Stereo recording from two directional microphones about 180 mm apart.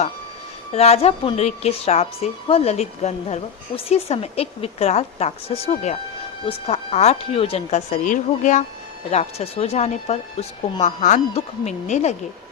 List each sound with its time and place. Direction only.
0.7 s a woman's voice: 35° left (ahead or behind)
9.0 s a woman's voice: 35° left (ahead or behind)